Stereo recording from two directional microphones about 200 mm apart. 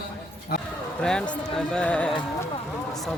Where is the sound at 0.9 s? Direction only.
5° left (ahead or behind).